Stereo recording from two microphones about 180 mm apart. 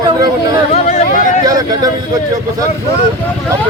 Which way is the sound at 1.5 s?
20° right (ahead or behind).